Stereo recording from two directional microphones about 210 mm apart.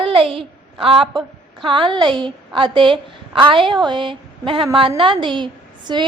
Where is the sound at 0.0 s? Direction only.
25° right (ahead or behind).